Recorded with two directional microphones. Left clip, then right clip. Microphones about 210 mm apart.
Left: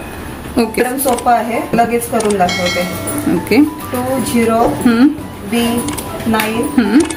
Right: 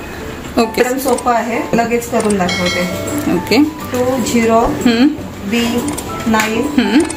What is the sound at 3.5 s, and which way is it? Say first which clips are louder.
Speech: left 1 dB; 20° left (ahead or behind).